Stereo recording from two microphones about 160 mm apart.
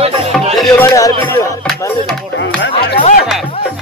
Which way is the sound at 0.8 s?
20° left (ahead or behind).